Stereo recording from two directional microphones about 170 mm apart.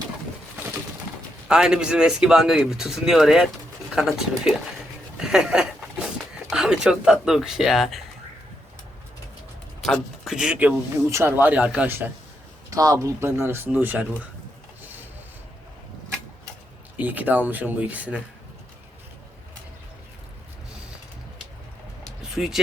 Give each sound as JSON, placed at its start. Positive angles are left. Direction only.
{"t": 1.5, "sound": "speech", "side_deg": -5}
{"t": 5.2, "sound": "a sound", "side_deg": -5}
{"t": 6.5, "sound": "speech", "side_deg": -5}
{"t": 9.8, "sound": "speech", "side_deg": 0}
{"t": 12.7, "sound": "speech", "side_deg": -20}
{"t": 17.0, "sound": "speech", "side_deg": -10}
{"t": 22.4, "sound": "speech", "side_deg": 0}